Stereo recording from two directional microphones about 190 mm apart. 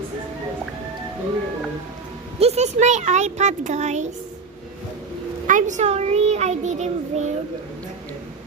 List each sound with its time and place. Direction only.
2.4 s a child's voice: 35° right (ahead or behind)
5.5 s a child's voice: 40° right (ahead or behind)